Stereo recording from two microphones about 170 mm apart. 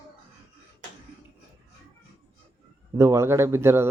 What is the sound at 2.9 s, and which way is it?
Speech, 15° right (ahead or behind).